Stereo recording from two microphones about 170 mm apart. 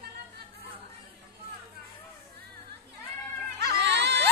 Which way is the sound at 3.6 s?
80° right.